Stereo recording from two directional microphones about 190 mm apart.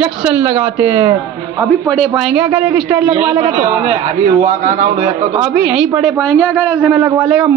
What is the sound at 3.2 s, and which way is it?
A man's voice, 35° right (ahead or behind).